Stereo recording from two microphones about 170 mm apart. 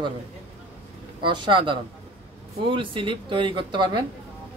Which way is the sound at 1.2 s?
30° right (ahead or behind).